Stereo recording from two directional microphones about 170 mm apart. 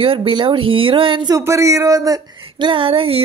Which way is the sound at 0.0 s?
35° right (ahead or behind).